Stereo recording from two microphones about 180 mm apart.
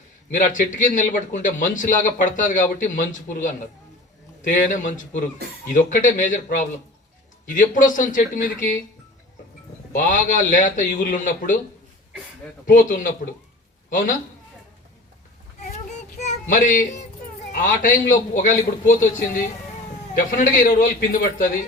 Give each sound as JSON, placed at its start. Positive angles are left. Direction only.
{"t": 0.3, "sound": "a man's voice", "side_deg": 45}
{"t": 9.9, "sound": "a man's voice", "side_deg": 45}
{"t": 12.6, "sound": "a man's voice", "side_deg": 45}
{"t": 16.0, "sound": "a sound", "side_deg": 45}
{"t": 17.5, "sound": "a man's voice", "side_deg": 45}